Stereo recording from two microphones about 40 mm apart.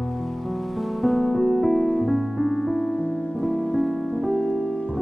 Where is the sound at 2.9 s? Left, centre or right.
Centre.